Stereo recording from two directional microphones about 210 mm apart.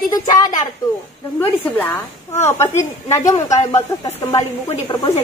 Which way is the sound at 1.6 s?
10° left (ahead or behind).